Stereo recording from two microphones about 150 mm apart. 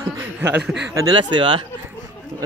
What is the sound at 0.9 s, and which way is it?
Speech, 30° right (ahead or behind).